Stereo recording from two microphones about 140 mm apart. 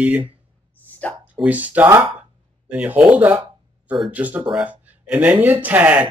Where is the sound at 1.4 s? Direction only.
10° right (ahead or behind).